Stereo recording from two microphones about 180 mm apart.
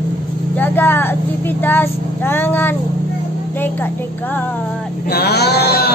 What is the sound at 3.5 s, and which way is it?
Music, 10° left (ahead or behind).